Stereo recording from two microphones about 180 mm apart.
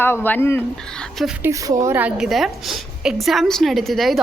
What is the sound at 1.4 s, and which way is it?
A woman's voice, 15° right (ahead or behind).